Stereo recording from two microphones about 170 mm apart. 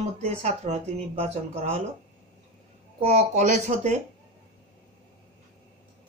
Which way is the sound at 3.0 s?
40° right (ahead or behind).